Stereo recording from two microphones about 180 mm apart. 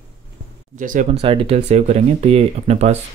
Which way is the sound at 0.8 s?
45° right (ahead or behind).